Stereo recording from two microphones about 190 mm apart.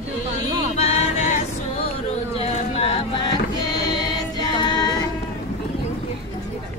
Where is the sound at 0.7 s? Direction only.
35° left (ahead or behind).